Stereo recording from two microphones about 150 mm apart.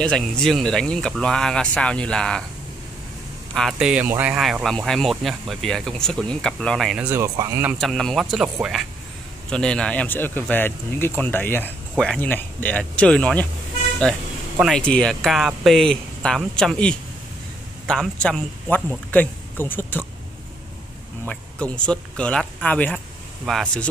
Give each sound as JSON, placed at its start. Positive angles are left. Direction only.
{"t": 0.0, "sound": "speech", "side_deg": 5}
{"t": 3.5, "sound": "speech", "side_deg": 0}
{"t": 7.1, "sound": "speech", "side_deg": -20}
{"t": 7.9, "sound": "speech", "side_deg": 5}
{"t": 19.0, "sound": "speech", "side_deg": 10}
{"t": 21.3, "sound": "speech", "side_deg": 5}